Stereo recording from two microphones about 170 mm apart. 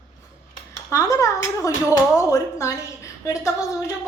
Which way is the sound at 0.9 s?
20° left (ahead or behind).